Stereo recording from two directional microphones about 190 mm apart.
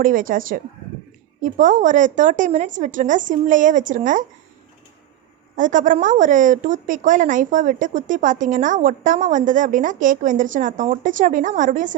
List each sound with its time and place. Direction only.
0.0 s a woman's voice: 45° right (ahead or behind)
5.5 s a woman's voice: 45° right (ahead or behind)